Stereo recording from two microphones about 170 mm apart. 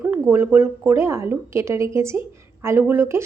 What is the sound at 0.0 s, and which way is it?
A woman's voice, 10° right (ahead or behind).